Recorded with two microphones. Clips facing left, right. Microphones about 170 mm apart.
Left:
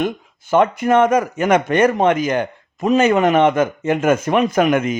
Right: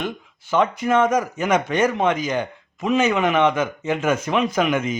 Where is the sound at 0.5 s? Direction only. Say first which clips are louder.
Left 4 dB; 50° left (ahead or behind).